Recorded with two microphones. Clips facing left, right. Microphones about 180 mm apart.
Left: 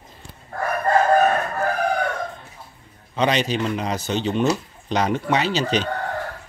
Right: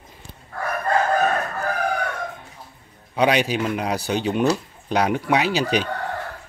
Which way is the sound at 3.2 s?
10° right (ahead or behind).